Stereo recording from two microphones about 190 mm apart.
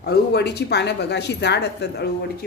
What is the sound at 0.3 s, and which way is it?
Speech, 60° left (ahead or behind).